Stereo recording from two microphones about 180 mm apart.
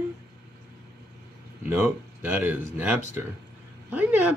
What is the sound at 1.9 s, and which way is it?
Speech, 10° right (ahead or behind).